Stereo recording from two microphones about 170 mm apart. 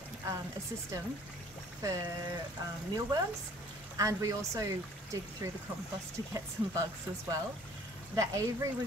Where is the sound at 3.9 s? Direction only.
20° right (ahead or behind).